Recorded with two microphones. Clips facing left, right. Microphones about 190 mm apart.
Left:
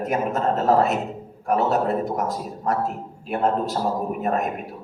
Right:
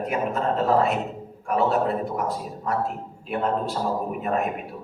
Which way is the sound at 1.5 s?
40° left (ahead or behind).